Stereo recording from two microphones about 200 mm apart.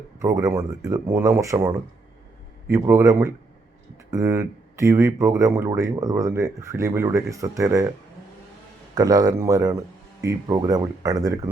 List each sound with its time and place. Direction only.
0.2 s speech: 15° right (ahead or behind)
9.0 s speech: 20° right (ahead or behind)